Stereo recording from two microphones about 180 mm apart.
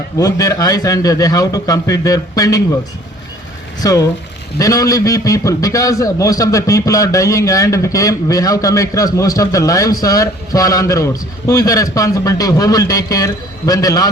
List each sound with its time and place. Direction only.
0.2 s a man's voice: 20° left (ahead or behind)
3.8 s a man's voice: 20° left (ahead or behind)